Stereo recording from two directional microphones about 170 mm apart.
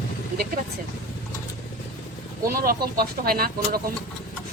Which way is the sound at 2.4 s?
60° right (ahead or behind).